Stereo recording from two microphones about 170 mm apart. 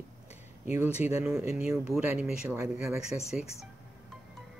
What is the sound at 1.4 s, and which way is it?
Speech, 15° right (ahead or behind).